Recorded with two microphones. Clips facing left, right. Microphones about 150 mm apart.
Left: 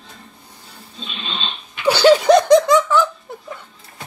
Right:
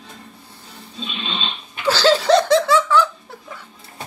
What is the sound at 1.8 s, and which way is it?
Laughter, 15° left (ahead or behind).